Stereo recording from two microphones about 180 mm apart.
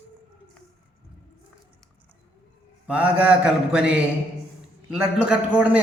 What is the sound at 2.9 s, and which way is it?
Mantra, 5° right (ahead or behind).